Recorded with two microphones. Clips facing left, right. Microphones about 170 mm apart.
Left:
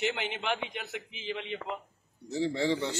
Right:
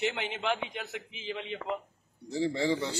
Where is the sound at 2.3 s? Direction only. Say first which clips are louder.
Even; 15° right (ahead or behind).